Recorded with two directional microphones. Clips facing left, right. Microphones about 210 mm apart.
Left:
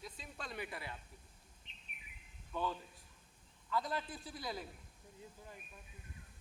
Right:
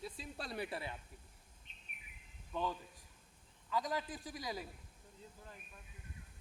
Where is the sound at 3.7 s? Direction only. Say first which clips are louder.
Right 1 dB; 15° right (ahead or behind).